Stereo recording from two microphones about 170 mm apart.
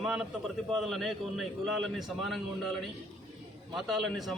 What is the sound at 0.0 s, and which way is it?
A man's voice, centre (ahead or behind).